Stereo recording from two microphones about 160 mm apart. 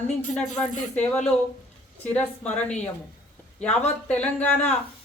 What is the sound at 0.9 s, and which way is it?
Speech, 10° left (ahead or behind).